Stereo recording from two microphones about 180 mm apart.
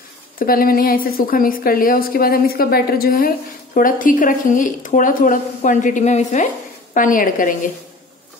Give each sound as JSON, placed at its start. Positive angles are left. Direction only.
{"t": 0.4, "sound": "a woman's voice", "side_deg": 55}